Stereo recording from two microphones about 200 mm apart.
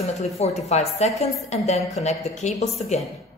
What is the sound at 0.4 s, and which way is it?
A woman's voice, 35° left (ahead or behind).